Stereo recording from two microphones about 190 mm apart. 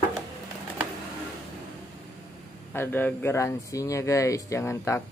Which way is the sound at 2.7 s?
10° left (ahead or behind).